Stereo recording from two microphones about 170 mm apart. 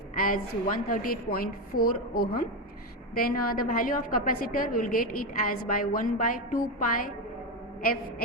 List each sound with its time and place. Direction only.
0.2 s a woman's voice: 55° left (ahead or behind)